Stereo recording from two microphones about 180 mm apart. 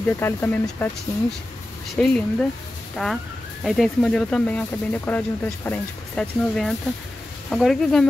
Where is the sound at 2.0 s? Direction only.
5° left (ahead or behind).